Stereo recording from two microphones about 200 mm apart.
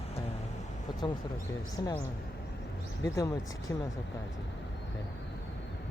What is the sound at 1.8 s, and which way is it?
Speech, 15° left (ahead or behind).